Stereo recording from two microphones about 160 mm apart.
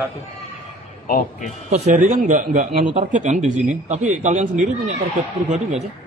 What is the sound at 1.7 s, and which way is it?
A man's voice, 50° right (ahead or behind).